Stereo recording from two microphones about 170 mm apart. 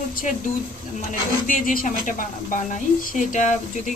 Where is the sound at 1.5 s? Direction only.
50° left (ahead or behind).